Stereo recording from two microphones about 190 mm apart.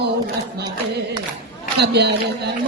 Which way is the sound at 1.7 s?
60° right (ahead or behind).